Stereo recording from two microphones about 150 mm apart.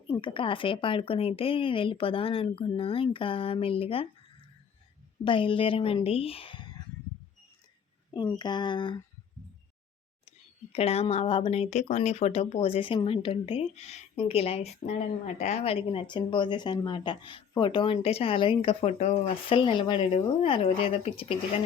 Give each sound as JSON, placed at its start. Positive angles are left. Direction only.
{"t": 0.1, "sound": "speech", "side_deg": 35}
{"t": 8.1, "sound": "speech", "side_deg": 30}
{"t": 10.2, "sound": "speech", "side_deg": 45}